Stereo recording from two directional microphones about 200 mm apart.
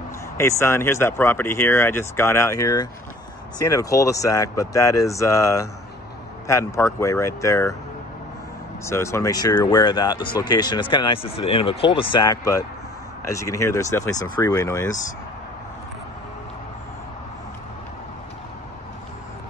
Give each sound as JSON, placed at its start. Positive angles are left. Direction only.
{"t": 0.4, "sound": "speech", "side_deg": 15}
{"t": 8.8, "sound": "speech", "side_deg": 15}